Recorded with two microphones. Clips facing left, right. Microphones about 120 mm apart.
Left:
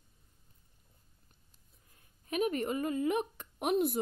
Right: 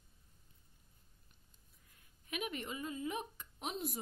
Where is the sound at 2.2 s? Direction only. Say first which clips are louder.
Left 10 dB; 40° left (ahead or behind).